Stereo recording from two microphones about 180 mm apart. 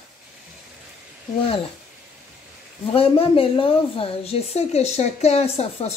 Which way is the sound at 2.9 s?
30° left (ahead or behind).